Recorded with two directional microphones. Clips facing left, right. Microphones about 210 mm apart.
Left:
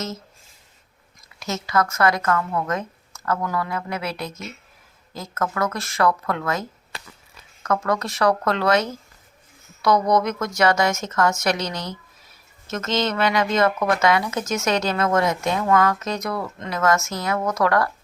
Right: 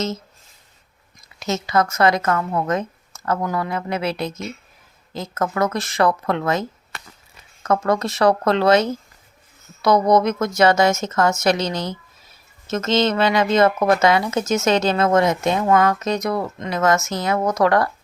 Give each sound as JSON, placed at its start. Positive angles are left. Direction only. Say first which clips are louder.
{"t": 1.4, "sound": "speech", "louder": "right 3 dB", "side_deg": -20}